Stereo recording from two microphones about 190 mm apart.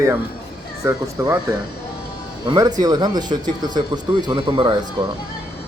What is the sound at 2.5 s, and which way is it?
Speech, 20° right (ahead or behind).